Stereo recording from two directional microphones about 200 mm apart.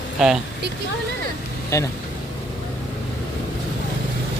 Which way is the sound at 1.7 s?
15° left (ahead or behind).